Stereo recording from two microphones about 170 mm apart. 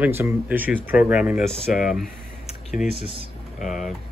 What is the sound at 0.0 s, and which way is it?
Speech, 15° right (ahead or behind).